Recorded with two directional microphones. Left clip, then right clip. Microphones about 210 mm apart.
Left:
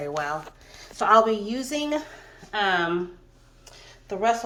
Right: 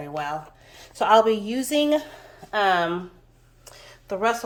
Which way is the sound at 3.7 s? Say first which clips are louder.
Right 3 dB; 15° right (ahead or behind).